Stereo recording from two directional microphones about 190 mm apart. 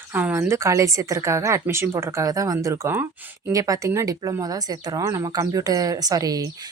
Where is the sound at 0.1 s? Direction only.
10° right (ahead or behind).